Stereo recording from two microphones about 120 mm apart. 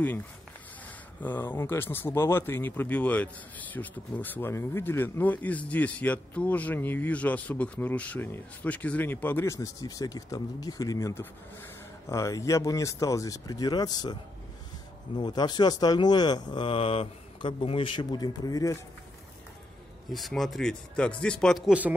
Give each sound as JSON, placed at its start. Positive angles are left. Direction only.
{"t": 1.2, "sound": "speech", "side_deg": 15}
{"t": 15.1, "sound": "a man's voice", "side_deg": 35}
{"t": 20.1, "sound": "speech", "side_deg": 0}
{"t": 21.6, "sound": "speech", "side_deg": -10}